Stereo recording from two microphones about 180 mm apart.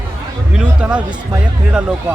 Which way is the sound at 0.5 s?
5° right (ahead or behind).